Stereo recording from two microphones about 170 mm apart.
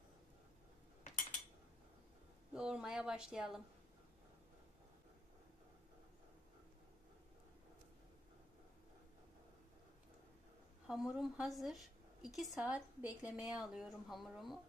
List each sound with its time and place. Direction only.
2.5 s a woman's voice: 5° right (ahead or behind)
10.9 s a woman's voice: centre (ahead or behind)